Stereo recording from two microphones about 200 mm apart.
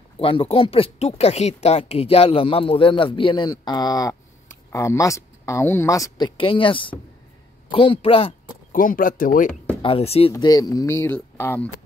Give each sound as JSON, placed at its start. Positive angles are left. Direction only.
{"t": 0.2, "sound": "speech", "side_deg": 25}
{"t": 8.7, "sound": "speech", "side_deg": 45}
{"t": 9.8, "sound": "speech", "side_deg": 25}
{"t": 10.3, "sound": "speech", "side_deg": 20}